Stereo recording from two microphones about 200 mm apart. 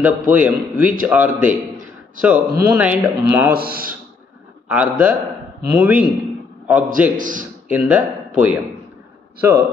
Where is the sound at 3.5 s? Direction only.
50° right (ahead or behind).